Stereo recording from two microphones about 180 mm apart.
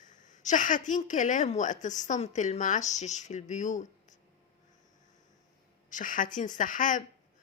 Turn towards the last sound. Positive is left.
turn(degrees=45)  # may be behind; listen again after turning